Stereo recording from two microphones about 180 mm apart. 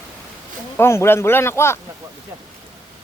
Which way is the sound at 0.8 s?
15° left (ahead or behind).